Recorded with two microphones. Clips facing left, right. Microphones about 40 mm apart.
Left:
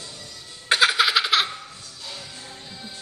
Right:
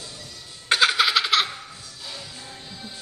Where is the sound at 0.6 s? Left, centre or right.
Centre.